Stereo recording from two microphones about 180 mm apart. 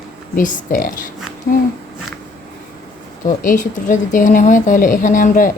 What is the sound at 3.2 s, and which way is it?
Speech, 45° left (ahead or behind).